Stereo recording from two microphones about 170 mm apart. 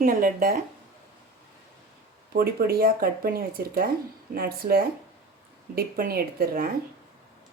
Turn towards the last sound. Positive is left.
turn(degrees=-60)  # may be behind; listen again after turning